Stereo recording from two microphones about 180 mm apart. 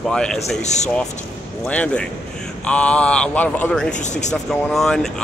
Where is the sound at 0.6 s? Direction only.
40° left (ahead or behind).